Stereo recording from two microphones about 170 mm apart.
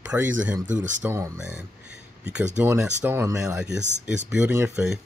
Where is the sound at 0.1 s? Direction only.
10° right (ahead or behind).